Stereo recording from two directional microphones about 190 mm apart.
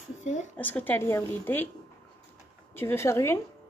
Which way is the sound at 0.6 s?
10° left (ahead or behind).